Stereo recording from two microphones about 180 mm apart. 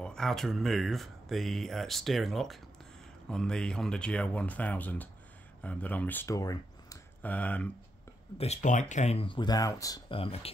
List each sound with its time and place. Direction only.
0.0 s speech: 5° left (ahead or behind); by 7.0 s 20° left (ahead or behind)
7.2 s speech: 10° left (ahead or behind)
8.4 s speech: 40° left (ahead or behind)